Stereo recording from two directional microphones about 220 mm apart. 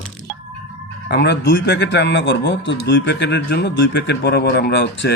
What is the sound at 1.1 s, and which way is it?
Speech, 50° left (ahead or behind).